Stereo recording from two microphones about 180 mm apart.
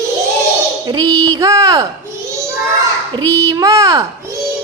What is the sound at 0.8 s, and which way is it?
Speech, 20° right (ahead or behind).